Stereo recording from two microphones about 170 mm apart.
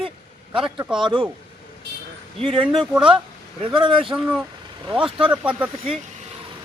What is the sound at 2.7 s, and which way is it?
Speech, centre (ahead or behind).